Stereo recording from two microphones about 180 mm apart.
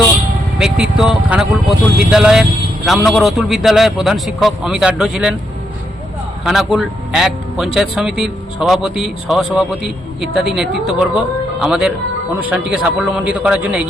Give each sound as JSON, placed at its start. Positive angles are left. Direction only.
{"t": 0.6, "sound": "a man's voice", "side_deg": -5}
{"t": 6.4, "sound": "a man's voice", "side_deg": -5}